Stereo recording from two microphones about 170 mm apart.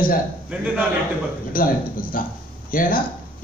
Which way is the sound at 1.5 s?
55° left (ahead or behind).